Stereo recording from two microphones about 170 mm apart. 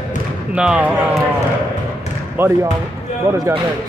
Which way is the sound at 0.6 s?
5° right (ahead or behind).